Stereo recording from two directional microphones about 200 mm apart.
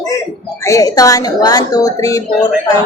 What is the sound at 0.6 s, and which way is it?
A woman's voice, 15° left (ahead or behind).